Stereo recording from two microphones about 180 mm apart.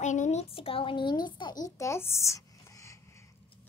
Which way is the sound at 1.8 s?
15° left (ahead or behind).